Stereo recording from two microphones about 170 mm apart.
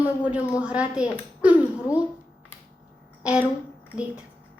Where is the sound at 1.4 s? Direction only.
10° right (ahead or behind).